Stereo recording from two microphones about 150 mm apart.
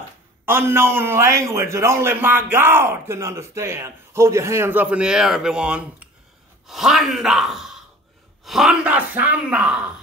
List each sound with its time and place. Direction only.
0.5 s a man's voice: 15° right (ahead or behind)